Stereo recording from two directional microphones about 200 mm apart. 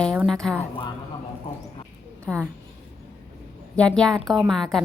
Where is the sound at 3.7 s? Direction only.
5° left (ahead or behind).